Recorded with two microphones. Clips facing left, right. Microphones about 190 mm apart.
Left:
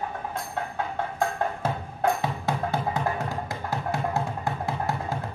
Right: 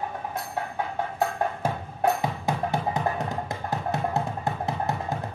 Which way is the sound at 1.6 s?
10° right (ahead or behind).